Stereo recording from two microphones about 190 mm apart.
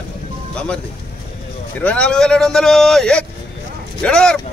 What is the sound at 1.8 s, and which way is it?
Speech, 5° left (ahead or behind).